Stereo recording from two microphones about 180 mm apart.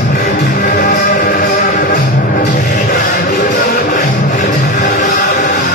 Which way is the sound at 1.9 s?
55° left (ahead or behind).